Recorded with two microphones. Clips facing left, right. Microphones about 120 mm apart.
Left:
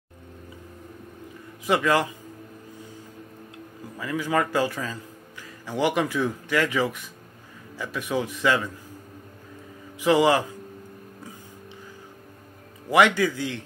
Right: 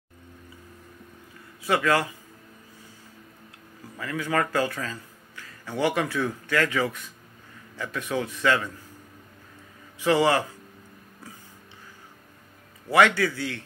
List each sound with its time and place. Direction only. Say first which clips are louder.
1.7 s a man's voice: left 1 dB; 15° left (ahead or behind)
4.0 s a man's voice: left 2 dB; 15° left (ahead or behind)
9.9 s a man's voice: left 2 dB; 15° left (ahead or behind)
12.9 s a man's voice: left 1 dB; 15° left (ahead or behind)